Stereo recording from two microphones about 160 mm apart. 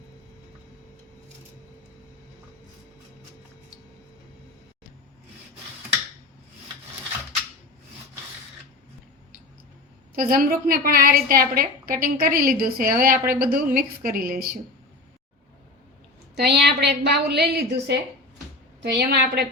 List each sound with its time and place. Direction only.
10.2 s a woman's voice: 65° right (ahead or behind)
16.3 s a woman's voice: 90° right